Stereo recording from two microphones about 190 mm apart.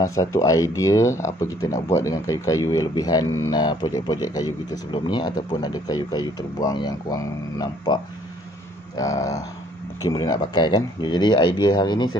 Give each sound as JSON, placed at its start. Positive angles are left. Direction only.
{"t": 0.0, "sound": "speech", "side_deg": 15}